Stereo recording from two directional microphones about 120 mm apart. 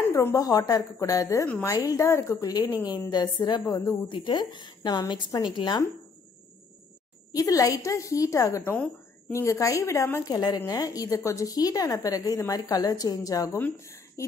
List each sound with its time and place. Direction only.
0.0 s a woman's voice: 20° left (ahead or behind); by 5.9 s 40° left (ahead or behind)
7.3 s speech: 30° left (ahead or behind)
13.6 s speech: 15° left (ahead or behind)
13.8 s a sound: 25° left (ahead or behind)